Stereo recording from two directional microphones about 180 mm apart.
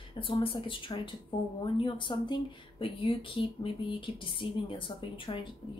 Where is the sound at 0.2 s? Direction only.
30° left (ahead or behind).